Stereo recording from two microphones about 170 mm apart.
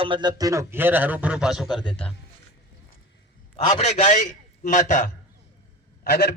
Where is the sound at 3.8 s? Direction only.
45° left (ahead or behind).